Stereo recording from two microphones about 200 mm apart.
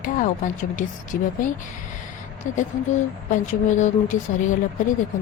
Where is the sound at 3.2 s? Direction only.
40° left (ahead or behind).